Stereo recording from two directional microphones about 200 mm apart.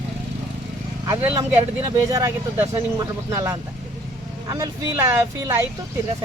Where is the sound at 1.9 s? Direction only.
15° right (ahead or behind).